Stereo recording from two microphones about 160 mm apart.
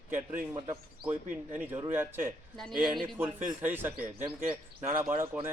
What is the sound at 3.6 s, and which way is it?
A man's voice, 15° right (ahead or behind).